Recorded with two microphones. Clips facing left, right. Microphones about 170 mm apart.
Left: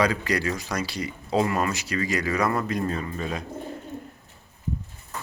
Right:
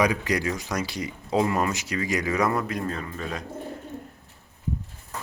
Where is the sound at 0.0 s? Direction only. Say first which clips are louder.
Even; 15° right (ahead or behind).